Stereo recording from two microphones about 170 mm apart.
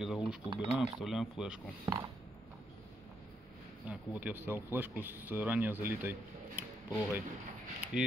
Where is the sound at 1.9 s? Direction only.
20° right (ahead or behind).